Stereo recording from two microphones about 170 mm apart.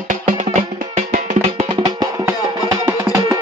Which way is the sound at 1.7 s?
25° right (ahead or behind).